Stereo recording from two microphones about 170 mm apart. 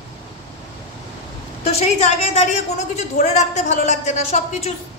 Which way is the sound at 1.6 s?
35° left (ahead or behind).